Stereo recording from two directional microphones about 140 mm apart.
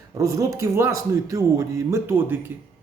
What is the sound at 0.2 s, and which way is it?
Speech, 20° right (ahead or behind).